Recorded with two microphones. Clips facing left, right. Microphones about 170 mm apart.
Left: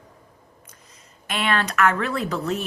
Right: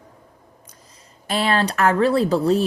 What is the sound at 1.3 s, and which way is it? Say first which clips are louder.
Speech: right 4 dB; 35° right (ahead or behind).